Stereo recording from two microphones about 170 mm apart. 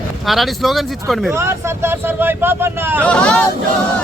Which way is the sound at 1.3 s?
15° right (ahead or behind).